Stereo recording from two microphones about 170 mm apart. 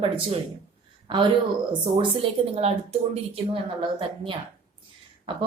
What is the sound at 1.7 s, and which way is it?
A woman's voice, 30° right (ahead or behind).